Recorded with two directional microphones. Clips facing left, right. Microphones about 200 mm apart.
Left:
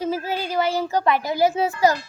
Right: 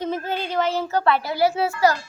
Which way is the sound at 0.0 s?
5° left (ahead or behind).